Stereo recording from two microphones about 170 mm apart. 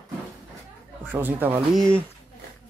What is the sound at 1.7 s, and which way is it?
Speech, 5° left (ahead or behind).